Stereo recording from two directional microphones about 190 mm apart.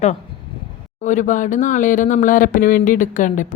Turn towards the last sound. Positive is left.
turn(degrees=40)  # may be behind; listen again after turning